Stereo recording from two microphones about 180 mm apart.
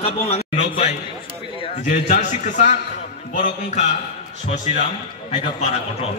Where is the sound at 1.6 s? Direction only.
35° left (ahead or behind).